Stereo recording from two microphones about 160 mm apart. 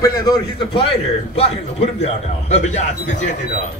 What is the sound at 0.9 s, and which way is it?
A man's voice, 40° left (ahead or behind).